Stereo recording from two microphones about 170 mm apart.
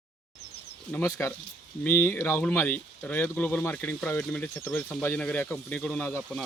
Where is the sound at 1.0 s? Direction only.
20° left (ahead or behind).